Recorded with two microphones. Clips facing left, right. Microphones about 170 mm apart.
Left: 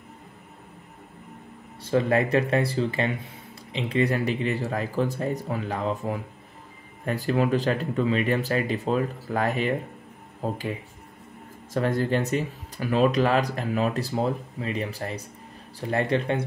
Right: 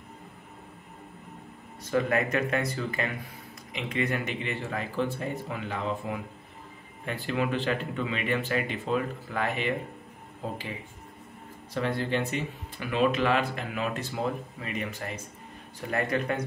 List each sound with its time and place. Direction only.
1.8 s speech: 30° left (ahead or behind)
11.7 s speech: 45° left (ahead or behind)